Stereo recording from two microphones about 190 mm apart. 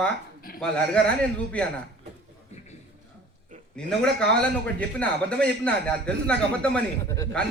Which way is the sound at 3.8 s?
5° left (ahead or behind).